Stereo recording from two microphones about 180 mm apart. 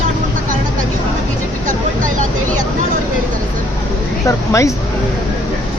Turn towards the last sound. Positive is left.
turn(degrees=15)  # may be behind; listen again after turning